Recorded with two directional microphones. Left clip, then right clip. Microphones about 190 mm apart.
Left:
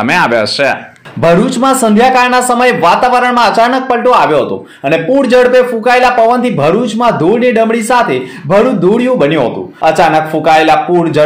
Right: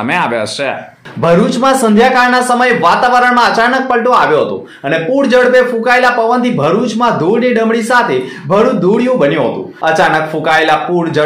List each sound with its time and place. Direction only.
0.1 s speech: 10° left (ahead or behind)
1.2 s a man's voice: 40° left (ahead or behind)